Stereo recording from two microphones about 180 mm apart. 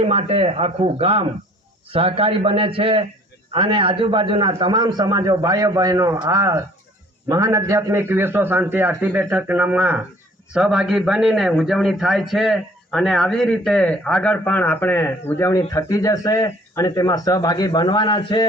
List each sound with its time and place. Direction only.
0.0 s a man's voice: 35° right (ahead or behind); by 18.4 s 25° left (ahead or behind)